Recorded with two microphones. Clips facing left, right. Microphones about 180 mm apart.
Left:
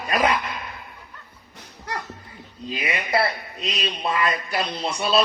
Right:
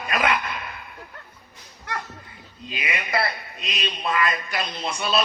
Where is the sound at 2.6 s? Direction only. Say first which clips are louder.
Left 3 dB; 35° left (ahead or behind).